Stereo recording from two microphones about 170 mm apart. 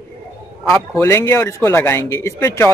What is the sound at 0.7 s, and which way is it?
A man's voice, 15° left (ahead or behind).